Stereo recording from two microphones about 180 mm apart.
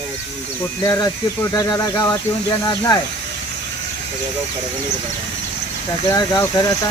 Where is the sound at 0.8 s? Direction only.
20° left (ahead or behind).